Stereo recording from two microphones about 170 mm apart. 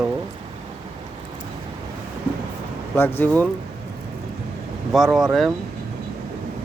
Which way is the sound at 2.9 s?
15° left (ahead or behind).